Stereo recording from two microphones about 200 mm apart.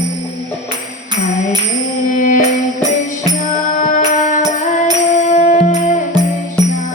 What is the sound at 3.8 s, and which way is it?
Music, 40° left (ahead or behind).